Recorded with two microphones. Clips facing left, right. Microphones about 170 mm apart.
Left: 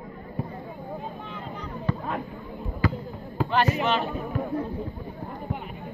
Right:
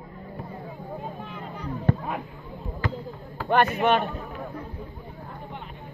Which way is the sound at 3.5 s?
55° right (ahead or behind).